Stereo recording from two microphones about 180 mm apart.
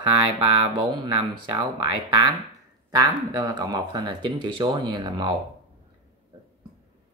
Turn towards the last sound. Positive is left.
turn(degrees=-25)  # may be behind; listen again after turning